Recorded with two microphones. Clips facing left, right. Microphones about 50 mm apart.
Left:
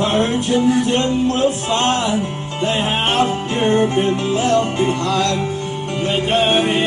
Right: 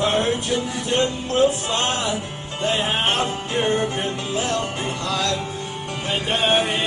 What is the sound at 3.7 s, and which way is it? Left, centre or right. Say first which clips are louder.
Music: left 8 dB; left.